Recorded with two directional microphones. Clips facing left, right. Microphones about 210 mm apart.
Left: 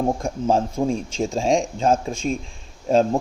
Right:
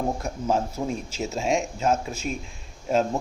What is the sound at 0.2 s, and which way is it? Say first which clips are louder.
Speech: left 5 dB; 30° left (ahead or behind).